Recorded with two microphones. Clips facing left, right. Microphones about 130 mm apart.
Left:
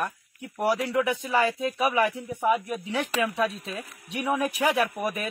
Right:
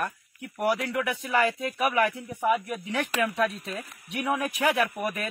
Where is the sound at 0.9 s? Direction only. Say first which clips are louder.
Left 3 dB; 25° left (ahead or behind); by 2.8 s 5° left (ahead or behind).